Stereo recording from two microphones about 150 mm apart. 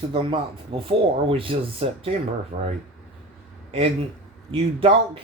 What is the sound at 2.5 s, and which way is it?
Speech, 70° right (ahead or behind).